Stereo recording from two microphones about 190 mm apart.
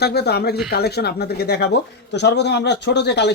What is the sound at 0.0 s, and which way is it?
Speech, 60° left (ahead or behind).